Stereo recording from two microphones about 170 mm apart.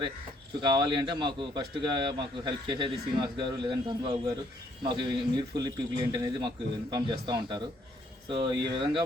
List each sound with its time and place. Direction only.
0.6 s a man's voice: 25° right (ahead or behind)